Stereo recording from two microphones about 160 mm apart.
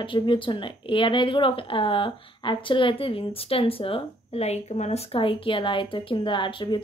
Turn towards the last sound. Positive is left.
turn(degrees=30)  # may be behind; listen again after turning